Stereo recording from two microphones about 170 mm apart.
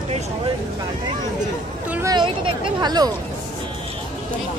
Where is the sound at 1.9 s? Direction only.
15° right (ahead or behind).